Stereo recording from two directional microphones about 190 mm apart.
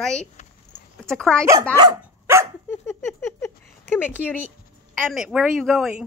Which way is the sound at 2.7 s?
15° left (ahead or behind).